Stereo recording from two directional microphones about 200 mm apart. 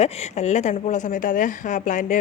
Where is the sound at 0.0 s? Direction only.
35° left (ahead or behind).